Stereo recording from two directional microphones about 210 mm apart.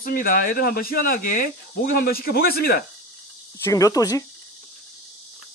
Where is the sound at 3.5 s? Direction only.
15° left (ahead or behind).